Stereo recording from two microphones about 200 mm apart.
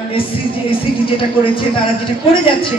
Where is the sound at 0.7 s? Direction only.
25° left (ahead or behind).